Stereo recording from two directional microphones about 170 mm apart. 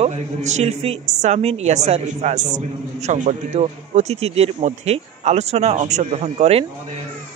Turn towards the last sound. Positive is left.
turn(degrees=-35)  # may be behind; listen again after turning